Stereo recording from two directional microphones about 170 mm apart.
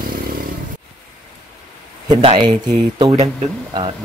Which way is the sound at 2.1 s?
30° right (ahead or behind).